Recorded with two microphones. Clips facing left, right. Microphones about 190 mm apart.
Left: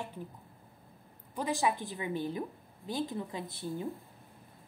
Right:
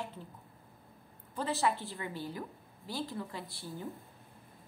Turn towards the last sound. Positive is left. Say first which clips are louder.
# left 5 dB
turn(degrees=20)  # may be behind; listen again after turning